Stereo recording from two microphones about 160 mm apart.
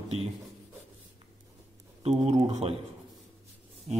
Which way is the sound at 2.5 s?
40° right (ahead or behind).